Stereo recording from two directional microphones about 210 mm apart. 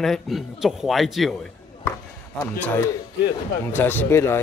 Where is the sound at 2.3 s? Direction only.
10° left (ahead or behind).